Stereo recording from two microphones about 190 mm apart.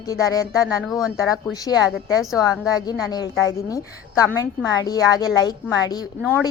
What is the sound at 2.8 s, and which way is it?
A woman's voice, 20° left (ahead or behind).